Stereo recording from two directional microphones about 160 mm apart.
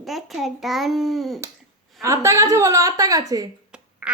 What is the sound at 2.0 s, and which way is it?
A woman's voice, 20° right (ahead or behind).